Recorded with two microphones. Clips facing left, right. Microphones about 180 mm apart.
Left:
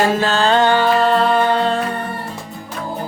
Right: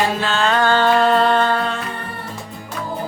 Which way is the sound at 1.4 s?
20° left (ahead or behind).